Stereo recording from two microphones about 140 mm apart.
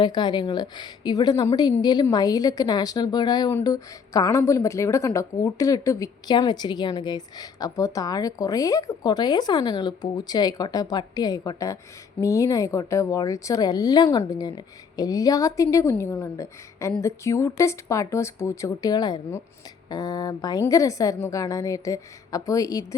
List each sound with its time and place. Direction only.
0.0 s a woman's voice: 30° left (ahead or behind)